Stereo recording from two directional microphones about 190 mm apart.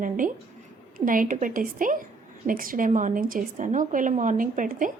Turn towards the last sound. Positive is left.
turn(degrees=-45)  # may be behind; listen again after turning